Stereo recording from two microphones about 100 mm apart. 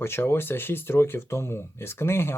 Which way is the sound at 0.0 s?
25° left (ahead or behind).